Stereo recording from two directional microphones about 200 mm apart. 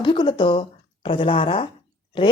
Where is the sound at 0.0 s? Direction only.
25° left (ahead or behind).